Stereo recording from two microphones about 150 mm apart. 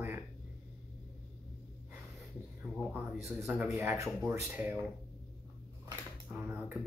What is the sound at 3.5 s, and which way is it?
Speech, 5° right (ahead or behind).